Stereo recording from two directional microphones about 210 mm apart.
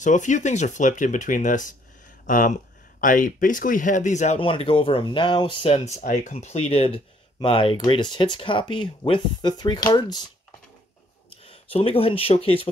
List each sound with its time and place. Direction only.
0.0 s speech: 35° left (ahead or behind)
5.9 s speech: 35° left (ahead or behind); by 10.2 s 20° left (ahead or behind)
11.4 s speech: 25° left (ahead or behind)